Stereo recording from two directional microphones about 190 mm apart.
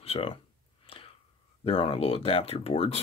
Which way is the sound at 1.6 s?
30° left (ahead or behind).